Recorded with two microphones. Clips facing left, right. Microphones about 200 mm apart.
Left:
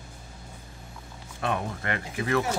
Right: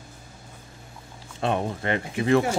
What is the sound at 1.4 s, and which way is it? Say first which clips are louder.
Speech: right 4 dB; 25° right (ahead or behind).